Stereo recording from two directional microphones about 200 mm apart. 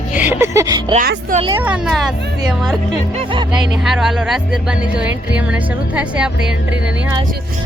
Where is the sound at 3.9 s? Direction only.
Centre (ahead or behind).